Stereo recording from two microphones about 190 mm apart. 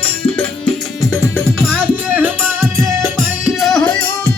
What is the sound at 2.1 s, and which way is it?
Music, 10° right (ahead or behind).